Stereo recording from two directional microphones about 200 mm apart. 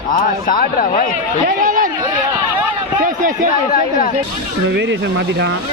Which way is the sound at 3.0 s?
40° right (ahead or behind).